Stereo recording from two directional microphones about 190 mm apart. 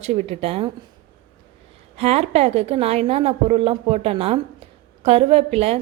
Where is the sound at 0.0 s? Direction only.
35° right (ahead or behind).